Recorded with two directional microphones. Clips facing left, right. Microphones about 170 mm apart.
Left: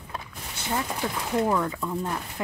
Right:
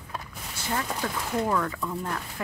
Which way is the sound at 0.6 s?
15° left (ahead or behind).